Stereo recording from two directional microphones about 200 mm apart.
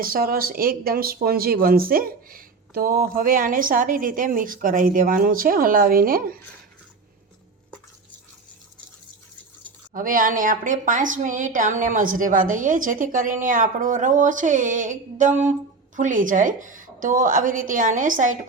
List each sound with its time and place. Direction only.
0.0 s speech: 45° right (ahead or behind)
9.9 s a woman's voice: 45° right (ahead or behind)